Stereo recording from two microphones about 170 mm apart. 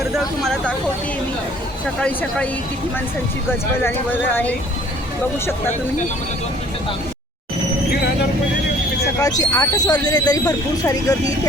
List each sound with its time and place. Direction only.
0.2 s speech: centre (ahead or behind)
2.0 s speech: 5° left (ahead or behind)
3.8 s speech: 10° left (ahead or behind)
9.1 s speech: 20° left (ahead or behind)